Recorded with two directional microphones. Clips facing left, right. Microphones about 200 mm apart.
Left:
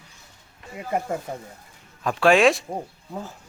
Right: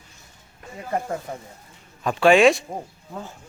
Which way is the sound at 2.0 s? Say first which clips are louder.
Right 2 dB; centre (ahead or behind).